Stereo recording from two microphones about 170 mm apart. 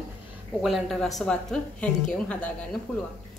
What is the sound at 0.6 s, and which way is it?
A woman's voice, centre (ahead or behind).